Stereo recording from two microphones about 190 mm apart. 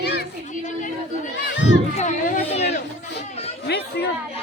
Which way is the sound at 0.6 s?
40° left (ahead or behind).